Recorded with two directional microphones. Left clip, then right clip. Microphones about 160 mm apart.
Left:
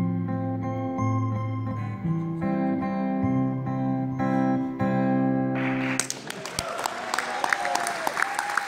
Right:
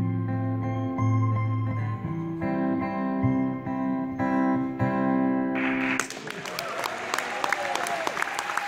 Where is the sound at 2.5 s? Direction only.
25° left (ahead or behind).